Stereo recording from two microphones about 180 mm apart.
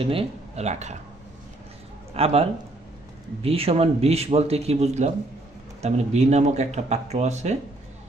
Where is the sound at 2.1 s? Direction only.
35° right (ahead or behind).